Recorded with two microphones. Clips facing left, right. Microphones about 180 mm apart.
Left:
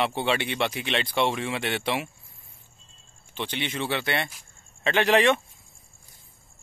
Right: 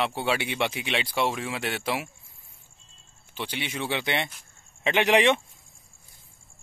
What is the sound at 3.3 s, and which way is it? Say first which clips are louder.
Speech: left 2 dB; 10° right (ahead or behind).